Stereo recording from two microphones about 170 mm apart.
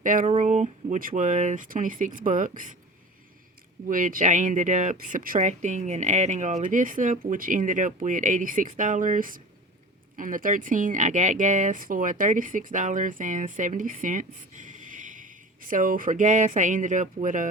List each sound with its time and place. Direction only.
0.0 s speech: 50° right (ahead or behind)
0.3 s speech: 40° right (ahead or behind)
3.8 s speech: 55° right (ahead or behind)